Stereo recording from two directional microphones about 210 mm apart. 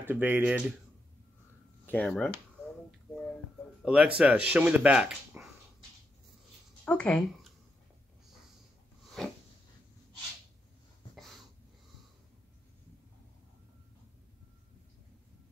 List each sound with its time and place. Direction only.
0.0 s speech: 10° right (ahead or behind)
1.9 s speech: 5° left (ahead or behind)
3.8 s speech: 5° right (ahead or behind)
6.8 s speech: 5° left (ahead or behind)
9.2 s a sound: centre (ahead or behind)
11.1 s a sound: centre (ahead or behind)